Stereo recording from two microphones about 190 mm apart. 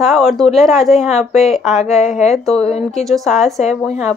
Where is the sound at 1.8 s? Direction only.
35° left (ahead or behind).